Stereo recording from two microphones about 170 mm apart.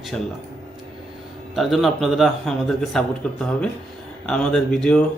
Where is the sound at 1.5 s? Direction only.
Centre (ahead or behind).